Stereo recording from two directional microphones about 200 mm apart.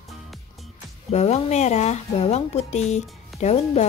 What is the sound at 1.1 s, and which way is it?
Speech, 35° left (ahead or behind).